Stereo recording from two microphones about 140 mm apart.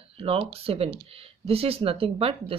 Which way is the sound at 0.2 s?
45° right (ahead or behind).